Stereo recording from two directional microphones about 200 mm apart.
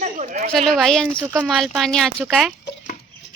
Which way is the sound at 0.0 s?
40° right (ahead or behind).